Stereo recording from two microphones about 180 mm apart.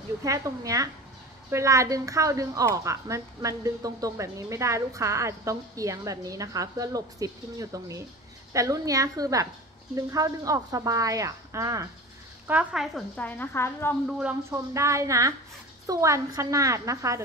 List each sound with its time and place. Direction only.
0.2 s speech: 20° right (ahead or behind)
12.4 s a woman's voice: 5° right (ahead or behind); by 13.9 s 10° left (ahead or behind)
14.5 s speech: 15° right (ahead or behind)